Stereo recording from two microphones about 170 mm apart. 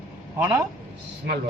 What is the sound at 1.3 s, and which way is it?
Speech, 75° right (ahead or behind).